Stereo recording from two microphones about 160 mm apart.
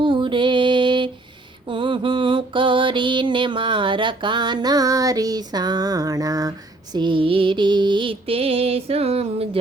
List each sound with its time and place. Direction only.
0.0 s female singing: 30° right (ahead or behind)
1.6 s mantra: 30° right (ahead or behind)